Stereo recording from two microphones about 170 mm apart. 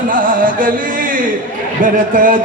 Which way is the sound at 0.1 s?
55° right (ahead or behind).